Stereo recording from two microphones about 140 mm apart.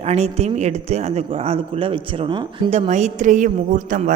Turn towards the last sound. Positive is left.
turn(degrees=-65)  # may be behind; listen again after turning